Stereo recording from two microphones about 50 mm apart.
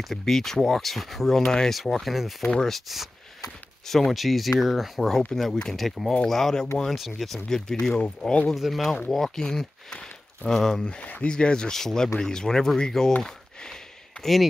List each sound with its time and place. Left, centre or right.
0.0 s speech: centre
1.8 s speech: centre
2.4 s speech: centre
2.7 s speech: centre
3.4 s a sound: centre
4.1 s speech: centre
7.2 s speech: centre
7.4 s speech: centre
8.5 s speech: centre
10.9 s speech: left
11.2 s speech: centre
13.2 s a sound: centre
14.2 s speech: centre